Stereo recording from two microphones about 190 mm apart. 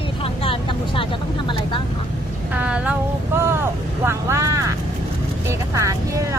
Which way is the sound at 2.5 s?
5° right (ahead or behind).